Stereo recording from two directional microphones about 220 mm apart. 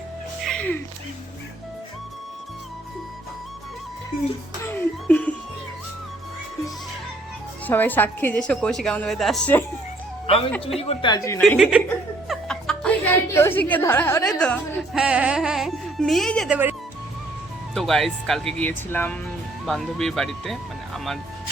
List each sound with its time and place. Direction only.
0.4 s music: 5° left (ahead or behind)
4.1 s a child's voice: 40° left (ahead or behind)
4.6 s a sound: 5° left (ahead or behind)
7.7 s a woman's voice: 10° left (ahead or behind)
10.2 s a man's voice: 25° left (ahead or behind)
11.3 s a woman's voice: centre (ahead or behind)
17.7 s a woman's voice: centre (ahead or behind)